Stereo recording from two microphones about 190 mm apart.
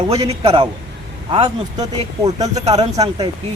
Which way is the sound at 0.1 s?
30° right (ahead or behind).